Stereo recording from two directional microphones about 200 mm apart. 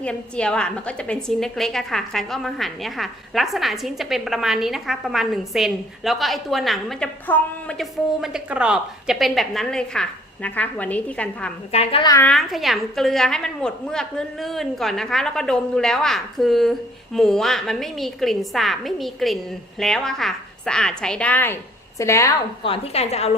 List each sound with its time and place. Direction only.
0.0 s a woman's voice: 5° left (ahead or behind)
11.7 s speech: 30° left (ahead or behind)
12.1 s a woman's voice: 5° left (ahead or behind)
22.6 s a woman's voice: 30° left (ahead or behind)